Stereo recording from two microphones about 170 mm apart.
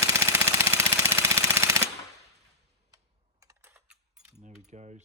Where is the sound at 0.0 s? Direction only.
15° right (ahead or behind).